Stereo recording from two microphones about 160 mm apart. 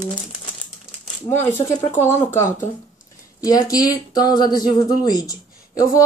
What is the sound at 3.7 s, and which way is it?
Speech, 25° left (ahead or behind).